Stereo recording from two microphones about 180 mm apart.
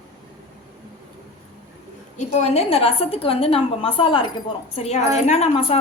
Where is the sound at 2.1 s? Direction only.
35° left (ahead or behind).